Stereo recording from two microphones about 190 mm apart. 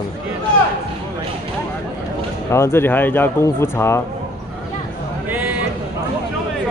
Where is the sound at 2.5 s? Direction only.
15° left (ahead or behind).